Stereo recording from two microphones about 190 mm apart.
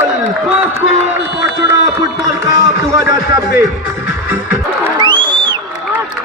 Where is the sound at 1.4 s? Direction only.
20° right (ahead or behind).